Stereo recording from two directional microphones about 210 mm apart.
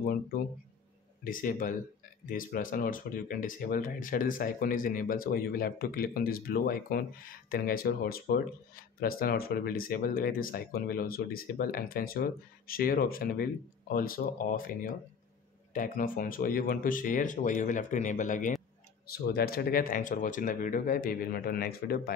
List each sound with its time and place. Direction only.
0.0 s speech: 45° left (ahead or behind)